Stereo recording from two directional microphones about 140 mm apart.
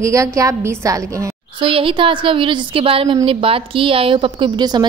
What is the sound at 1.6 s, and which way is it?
A woman's voice, 40° right (ahead or behind).